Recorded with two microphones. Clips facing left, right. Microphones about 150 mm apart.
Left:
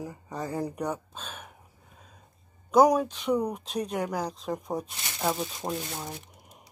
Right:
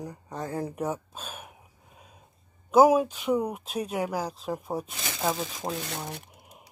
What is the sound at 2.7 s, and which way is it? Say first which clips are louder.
Speech: right 2 dB; 5° right (ahead or behind).